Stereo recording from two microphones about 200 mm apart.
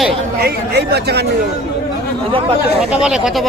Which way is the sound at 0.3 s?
50° right (ahead or behind).